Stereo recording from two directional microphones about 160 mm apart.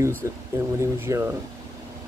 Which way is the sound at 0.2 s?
20° right (ahead or behind).